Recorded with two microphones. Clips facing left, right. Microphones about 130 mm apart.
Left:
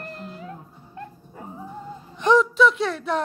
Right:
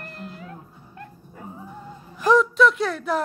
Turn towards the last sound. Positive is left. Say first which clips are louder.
# even
turn(degrees=0)  # may be behind; listen again after turning